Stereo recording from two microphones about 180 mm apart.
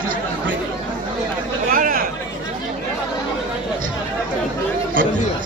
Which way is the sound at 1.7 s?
50° right (ahead or behind).